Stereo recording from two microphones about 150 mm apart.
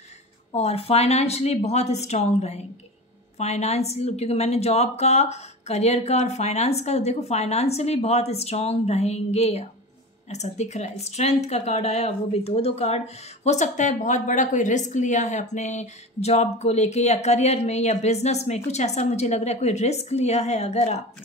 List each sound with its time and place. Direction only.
0.6 s speech: 45° left (ahead or behind)